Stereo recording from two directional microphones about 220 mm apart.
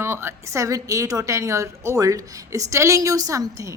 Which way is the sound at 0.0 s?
10° right (ahead or behind).